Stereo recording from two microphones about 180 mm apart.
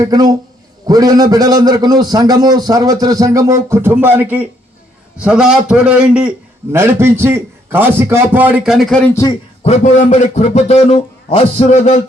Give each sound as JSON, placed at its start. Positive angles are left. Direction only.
{"t": 0.0, "sound": "a man's voice", "side_deg": -20}
{"t": 9.6, "sound": "a man's voice", "side_deg": 40}